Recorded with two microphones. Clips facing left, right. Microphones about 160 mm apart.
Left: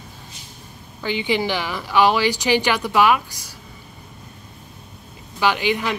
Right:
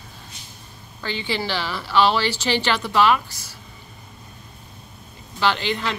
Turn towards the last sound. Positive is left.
turn(degrees=10)  # may be behind; listen again after turning